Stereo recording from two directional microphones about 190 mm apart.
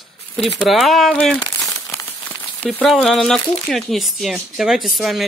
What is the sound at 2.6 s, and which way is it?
Speech, 5° left (ahead or behind).